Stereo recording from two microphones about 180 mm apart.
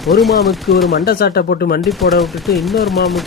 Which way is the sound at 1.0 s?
60° left (ahead or behind).